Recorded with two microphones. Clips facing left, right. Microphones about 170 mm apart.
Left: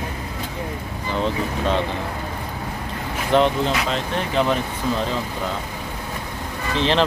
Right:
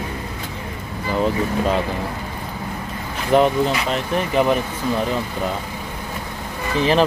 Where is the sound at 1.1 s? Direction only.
5° right (ahead or behind).